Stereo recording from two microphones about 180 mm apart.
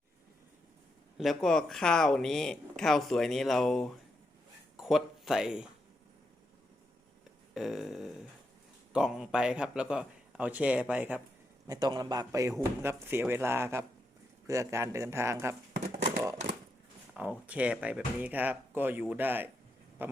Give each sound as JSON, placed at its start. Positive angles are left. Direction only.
{"t": 1.2, "sound": "speech", "side_deg": 0}
{"t": 7.5, "sound": "speech", "side_deg": 0}
{"t": 11.6, "sound": "a man's voice", "side_deg": -20}
{"t": 17.2, "sound": "speech", "side_deg": -5}